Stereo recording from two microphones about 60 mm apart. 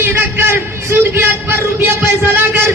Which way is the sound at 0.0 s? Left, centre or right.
Right.